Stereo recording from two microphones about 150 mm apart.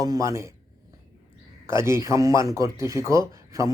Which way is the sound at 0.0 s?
25° right (ahead or behind).